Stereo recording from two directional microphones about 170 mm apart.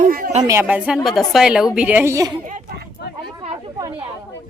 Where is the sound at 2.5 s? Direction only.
55° right (ahead or behind).